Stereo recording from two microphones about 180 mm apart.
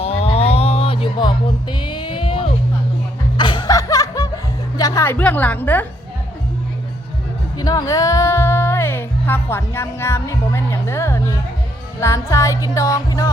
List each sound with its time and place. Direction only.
0.0 s a sound: 35° left (ahead or behind)
3.3 s music: 25° left (ahead or behind); by 5.8 s 10° left (ahead or behind)
7.6 s speech: 20° left (ahead or behind)
11.9 s music: 15° left (ahead or behind)